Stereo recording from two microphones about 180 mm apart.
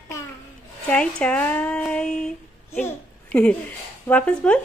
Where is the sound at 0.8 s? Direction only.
5° left (ahead or behind).